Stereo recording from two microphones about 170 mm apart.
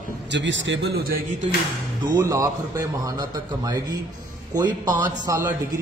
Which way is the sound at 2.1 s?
20° right (ahead or behind).